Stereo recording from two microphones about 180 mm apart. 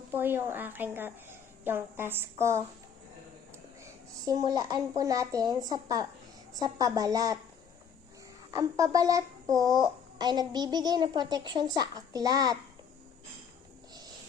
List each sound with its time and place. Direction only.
0.1 s a woman's voice: 10° right (ahead or behind)
4.3 s a child's voice: 20° right (ahead or behind)
8.5 s a child's voice: 20° right (ahead or behind)